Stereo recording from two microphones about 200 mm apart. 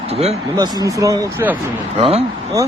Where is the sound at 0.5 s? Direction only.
20° right (ahead or behind).